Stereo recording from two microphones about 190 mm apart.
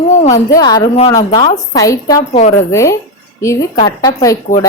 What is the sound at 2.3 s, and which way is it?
Speech, 40° left (ahead or behind).